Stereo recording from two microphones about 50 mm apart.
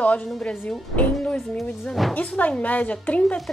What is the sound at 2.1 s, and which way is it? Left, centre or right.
A woman's voice, left.